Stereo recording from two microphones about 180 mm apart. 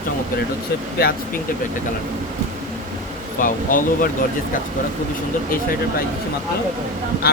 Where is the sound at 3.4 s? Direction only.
50° left (ahead or behind).